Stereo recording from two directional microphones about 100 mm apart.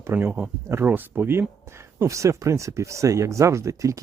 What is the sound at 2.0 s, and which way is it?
Speech, 30° right (ahead or behind).